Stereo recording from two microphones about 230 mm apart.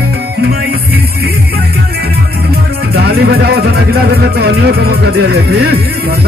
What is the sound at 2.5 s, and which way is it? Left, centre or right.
Music, right.